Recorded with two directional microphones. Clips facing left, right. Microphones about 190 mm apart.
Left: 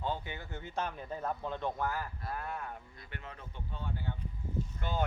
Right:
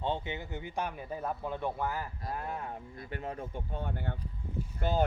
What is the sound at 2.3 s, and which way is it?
Speech, 30° right (ahead or behind).